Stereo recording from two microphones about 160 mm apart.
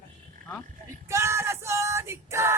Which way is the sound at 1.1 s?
15° right (ahead or behind).